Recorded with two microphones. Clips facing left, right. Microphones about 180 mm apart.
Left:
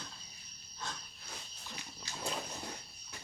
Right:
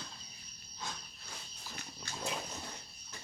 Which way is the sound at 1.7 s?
50° right (ahead or behind).